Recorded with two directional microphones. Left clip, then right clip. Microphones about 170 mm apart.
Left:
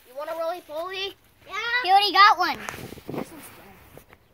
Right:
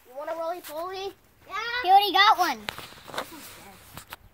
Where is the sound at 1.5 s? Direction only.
50° left (ahead or behind).